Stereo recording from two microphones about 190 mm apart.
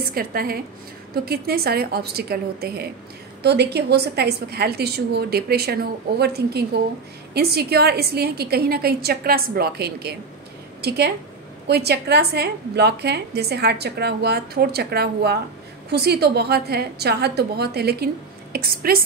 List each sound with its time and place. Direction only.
0.1 s a woman's voice: 55° right (ahead or behind)